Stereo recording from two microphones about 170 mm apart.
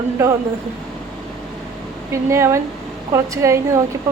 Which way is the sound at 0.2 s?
15° right (ahead or behind).